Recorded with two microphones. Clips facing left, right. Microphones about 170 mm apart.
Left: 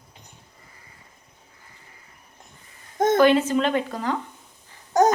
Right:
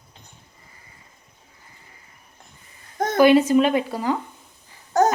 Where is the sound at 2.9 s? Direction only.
20° left (ahead or behind).